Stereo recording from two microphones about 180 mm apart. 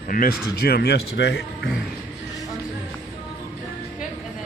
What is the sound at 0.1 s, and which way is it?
Speech, 55° left (ahead or behind).